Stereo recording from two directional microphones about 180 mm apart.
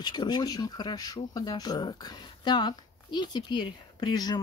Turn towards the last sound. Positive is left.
turn(degrees=20)  # may be behind; listen again after turning